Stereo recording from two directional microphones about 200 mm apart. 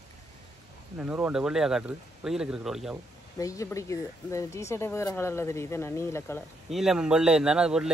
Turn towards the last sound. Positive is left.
turn(degrees=-5)  # may be behind; listen again after turning